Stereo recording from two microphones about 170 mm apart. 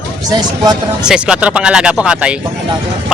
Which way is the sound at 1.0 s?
5° right (ahead or behind).